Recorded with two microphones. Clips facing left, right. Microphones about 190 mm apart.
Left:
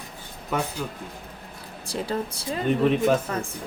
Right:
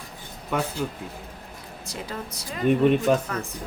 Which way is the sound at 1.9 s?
30° left (ahead or behind).